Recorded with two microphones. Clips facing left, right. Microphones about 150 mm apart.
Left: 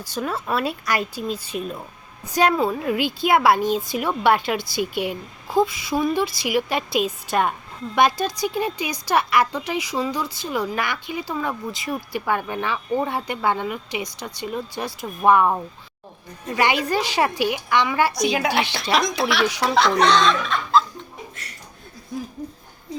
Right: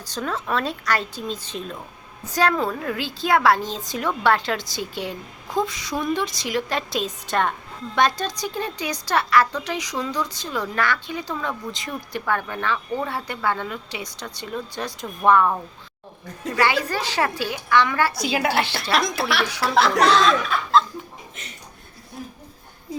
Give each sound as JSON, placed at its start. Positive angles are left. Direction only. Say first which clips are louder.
{"t": 0.1, "sound": "speech", "louder": "left 1 dB", "side_deg": 10}
{"t": 16.6, "sound": "speech", "louder": "left 1 dB", "side_deg": 15}
{"t": 18.3, "sound": "speech", "louder": "even", "side_deg": 0}
{"t": 21.4, "sound": "a sound", "louder": "right 1 dB", "side_deg": -20}